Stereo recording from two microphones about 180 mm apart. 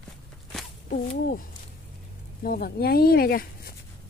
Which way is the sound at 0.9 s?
50° left (ahead or behind).